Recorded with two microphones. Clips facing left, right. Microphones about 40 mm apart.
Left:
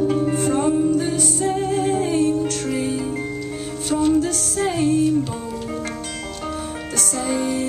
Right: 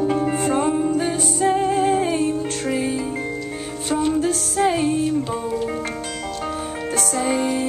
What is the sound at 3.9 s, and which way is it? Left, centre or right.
Music, centre.